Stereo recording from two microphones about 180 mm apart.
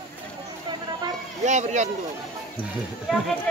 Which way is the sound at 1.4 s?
40° right (ahead or behind).